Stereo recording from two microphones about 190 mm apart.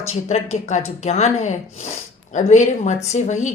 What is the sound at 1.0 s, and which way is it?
A woman's voice, 35° left (ahead or behind).